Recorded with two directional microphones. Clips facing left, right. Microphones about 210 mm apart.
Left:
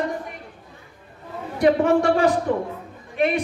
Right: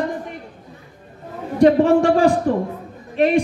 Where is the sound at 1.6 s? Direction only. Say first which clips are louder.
Right 4 dB; 35° right (ahead or behind).